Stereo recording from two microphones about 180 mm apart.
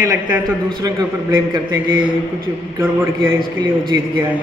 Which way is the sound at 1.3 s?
25° right (ahead or behind).